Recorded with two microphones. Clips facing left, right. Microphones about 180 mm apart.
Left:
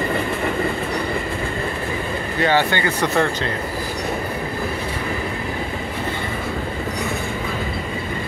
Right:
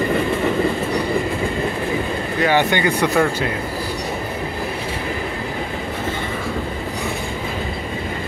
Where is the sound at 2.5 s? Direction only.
15° right (ahead or behind).